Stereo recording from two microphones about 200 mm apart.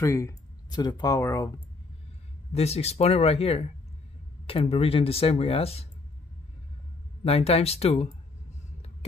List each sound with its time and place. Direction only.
0.0 s speech: 15° left (ahead or behind)
2.5 s speech: 30° left (ahead or behind)
7.2 s speech: 30° left (ahead or behind)